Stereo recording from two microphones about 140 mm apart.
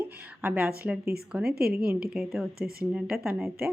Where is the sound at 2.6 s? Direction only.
90° right.